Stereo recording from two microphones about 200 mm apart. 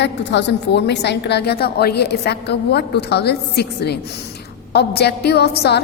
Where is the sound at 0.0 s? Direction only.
60° left (ahead or behind).